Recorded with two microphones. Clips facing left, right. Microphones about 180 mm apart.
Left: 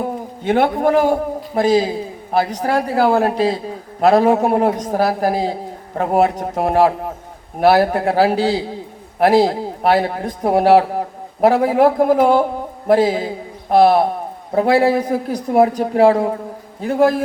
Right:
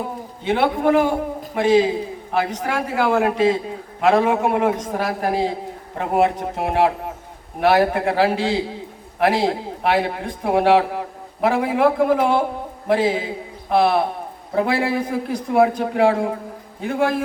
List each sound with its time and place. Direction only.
0.4 s a man's voice: 45° left (ahead or behind)